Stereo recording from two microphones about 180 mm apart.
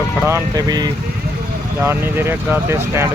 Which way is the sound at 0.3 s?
15° right (ahead or behind).